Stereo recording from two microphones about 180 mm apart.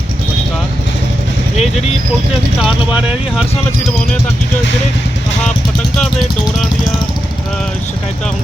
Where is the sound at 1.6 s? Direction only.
40° left (ahead or behind).